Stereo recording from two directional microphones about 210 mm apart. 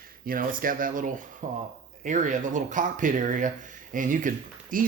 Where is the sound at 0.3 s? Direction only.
40° right (ahead or behind).